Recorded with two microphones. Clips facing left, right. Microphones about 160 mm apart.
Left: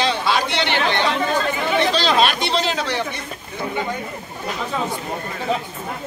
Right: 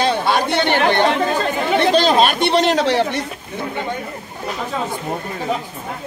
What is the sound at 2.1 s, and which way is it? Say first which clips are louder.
Speech: right 4 dB; 45° right (ahead or behind).